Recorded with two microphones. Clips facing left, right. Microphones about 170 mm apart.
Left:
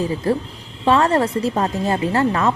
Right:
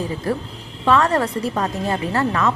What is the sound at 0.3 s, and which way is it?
A woman's voice, 30° left (ahead or behind).